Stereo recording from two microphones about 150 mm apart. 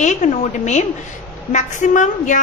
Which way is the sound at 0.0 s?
55° left (ahead or behind).